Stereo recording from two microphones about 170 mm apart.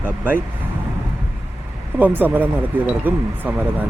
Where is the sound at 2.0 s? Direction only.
10° right (ahead or behind).